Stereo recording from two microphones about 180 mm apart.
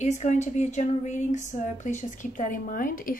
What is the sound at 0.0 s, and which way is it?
Speech, 40° left (ahead or behind).